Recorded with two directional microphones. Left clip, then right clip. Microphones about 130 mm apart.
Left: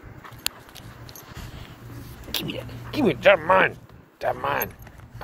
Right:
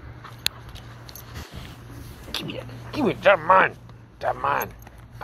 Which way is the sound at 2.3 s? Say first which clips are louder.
Left 2 dB; 30° left (ahead or behind).